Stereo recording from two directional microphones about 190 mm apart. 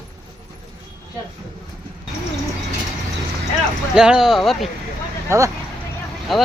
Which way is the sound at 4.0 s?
5° right (ahead or behind).